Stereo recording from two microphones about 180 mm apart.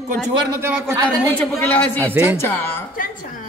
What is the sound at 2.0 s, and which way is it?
Speech, 15° right (ahead or behind).